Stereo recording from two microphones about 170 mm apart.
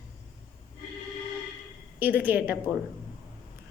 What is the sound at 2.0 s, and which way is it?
Speech, 10° right (ahead or behind).